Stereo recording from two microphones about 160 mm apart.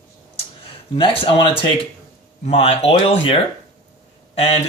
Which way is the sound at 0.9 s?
35° left (ahead or behind).